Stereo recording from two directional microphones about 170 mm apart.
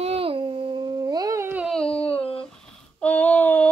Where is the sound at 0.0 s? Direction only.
35° right (ahead or behind); by 1.7 s 15° right (ahead or behind).